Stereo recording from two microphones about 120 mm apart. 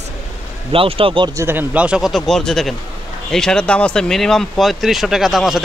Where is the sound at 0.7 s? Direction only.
50° right (ahead or behind).